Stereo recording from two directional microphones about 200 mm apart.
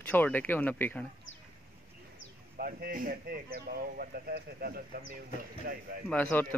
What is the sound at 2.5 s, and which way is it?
Speech, 45° right (ahead or behind).